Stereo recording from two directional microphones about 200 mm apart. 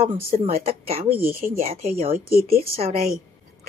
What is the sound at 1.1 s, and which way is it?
Speech, 10° right (ahead or behind).